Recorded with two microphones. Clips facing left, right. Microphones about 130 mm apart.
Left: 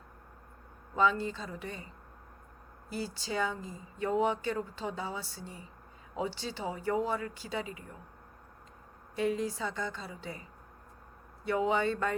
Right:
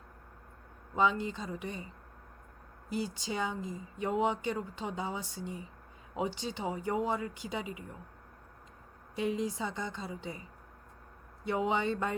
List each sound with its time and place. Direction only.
0.9 s speech: 15° right (ahead or behind)
2.9 s speech: 20° right (ahead or behind)
9.1 s speech: 20° right (ahead or behind)
11.4 s speech: 20° right (ahead or behind)